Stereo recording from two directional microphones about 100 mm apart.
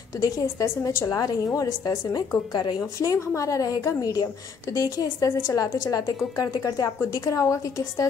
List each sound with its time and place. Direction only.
0.2 s a woman's voice: 35° left (ahead or behind)
2.8 s a woman's voice: 30° left (ahead or behind)